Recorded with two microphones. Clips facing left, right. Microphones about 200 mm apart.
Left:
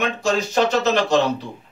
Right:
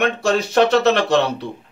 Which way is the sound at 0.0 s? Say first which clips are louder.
Right 3 dB; 60° right (ahead or behind).